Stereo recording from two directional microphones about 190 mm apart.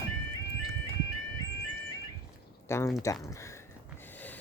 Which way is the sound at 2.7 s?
15° left (ahead or behind).